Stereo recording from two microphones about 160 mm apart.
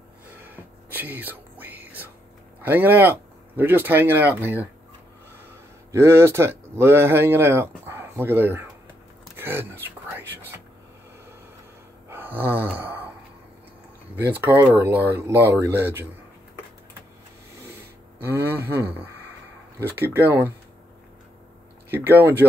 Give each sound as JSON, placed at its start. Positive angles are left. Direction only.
{"t": 0.4, "sound": "whispering", "side_deg": -10}
{"t": 2.6, "sound": "speech", "side_deg": -10}
{"t": 5.9, "sound": "speech", "side_deg": -15}
{"t": 9.4, "sound": "whispering", "side_deg": -15}
{"t": 12.1, "sound": "a sound", "side_deg": -15}
{"t": 14.1, "sound": "speech", "side_deg": -10}
{"t": 18.7, "sound": "speech", "side_deg": -10}
{"t": 21.9, "sound": "speech", "side_deg": -15}